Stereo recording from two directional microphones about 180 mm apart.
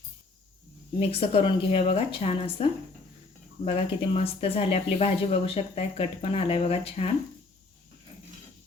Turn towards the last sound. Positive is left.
turn(degrees=35)  # may be behind; listen again after turning